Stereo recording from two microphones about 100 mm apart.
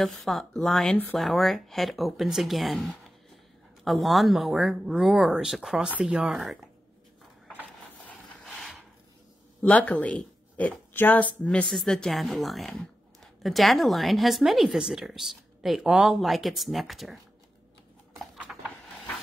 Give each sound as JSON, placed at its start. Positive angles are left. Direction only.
{"t": 0.0, "sound": "a woman's voice", "side_deg": 0}
{"t": 8.5, "sound": "a sound", "side_deg": 0}
{"t": 9.6, "sound": "a woman's voice", "side_deg": 15}